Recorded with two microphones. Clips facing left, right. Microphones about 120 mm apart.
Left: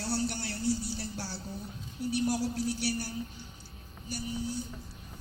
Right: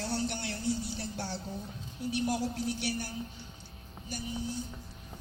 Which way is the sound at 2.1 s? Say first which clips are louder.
Left 1 dB; 35° left (ahead or behind).